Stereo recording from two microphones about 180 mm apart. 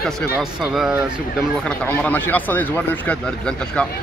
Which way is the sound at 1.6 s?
10° left (ahead or behind).